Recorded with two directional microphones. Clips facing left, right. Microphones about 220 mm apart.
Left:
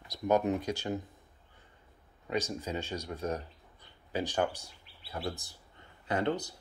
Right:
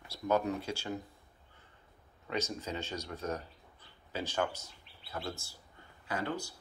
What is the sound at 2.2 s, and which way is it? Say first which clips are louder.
Speech: left 3 dB; 15° left (ahead or behind).